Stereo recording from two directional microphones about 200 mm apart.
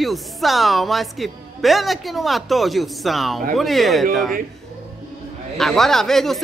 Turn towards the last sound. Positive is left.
turn(degrees=0)  # may be behind; listen again after turning